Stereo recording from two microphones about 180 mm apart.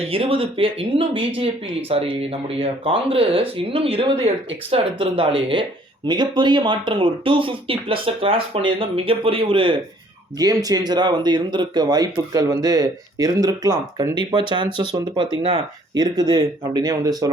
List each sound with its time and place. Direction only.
0.1 s speech: 30° right (ahead or behind)